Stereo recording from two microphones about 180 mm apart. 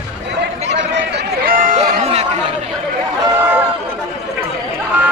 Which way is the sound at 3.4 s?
10° right (ahead or behind).